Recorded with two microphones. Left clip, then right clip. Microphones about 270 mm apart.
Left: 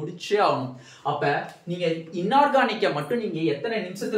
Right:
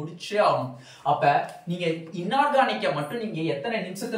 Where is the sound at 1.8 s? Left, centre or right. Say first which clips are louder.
Left 3 dB; centre.